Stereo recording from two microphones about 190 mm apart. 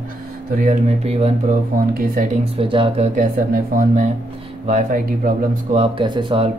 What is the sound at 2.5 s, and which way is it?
Speech, 30° right (ahead or behind).